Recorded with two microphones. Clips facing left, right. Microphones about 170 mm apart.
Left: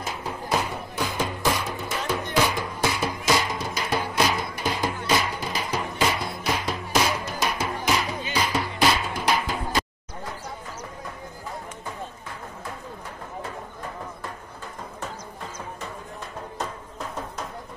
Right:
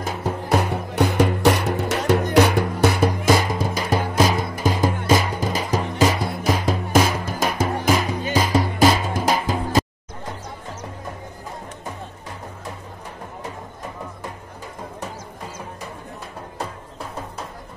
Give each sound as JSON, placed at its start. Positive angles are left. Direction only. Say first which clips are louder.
{"t": 0.0, "sound": "music", "louder": "right 6 dB", "side_deg": -55}